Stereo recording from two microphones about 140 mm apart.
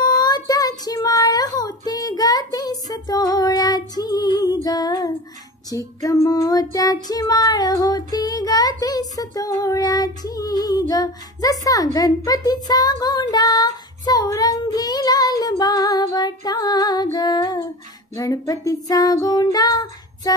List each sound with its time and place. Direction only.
0.0 s child singing: 30° left (ahead or behind)